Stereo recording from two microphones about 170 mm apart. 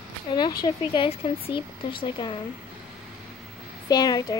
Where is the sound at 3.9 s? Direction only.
20° left (ahead or behind).